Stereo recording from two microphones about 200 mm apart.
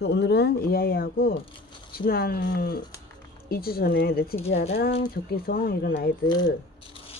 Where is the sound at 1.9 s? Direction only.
50° left (ahead or behind).